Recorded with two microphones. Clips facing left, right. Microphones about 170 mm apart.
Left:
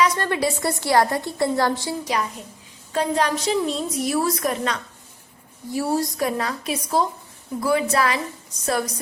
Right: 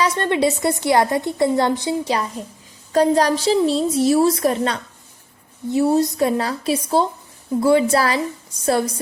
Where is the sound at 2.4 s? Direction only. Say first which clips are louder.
Right 7 dB; 35° right (ahead or behind).